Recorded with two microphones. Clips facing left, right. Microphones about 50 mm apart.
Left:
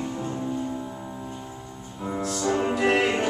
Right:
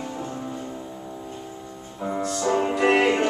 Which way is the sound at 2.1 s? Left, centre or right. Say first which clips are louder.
Right 2 dB; centre.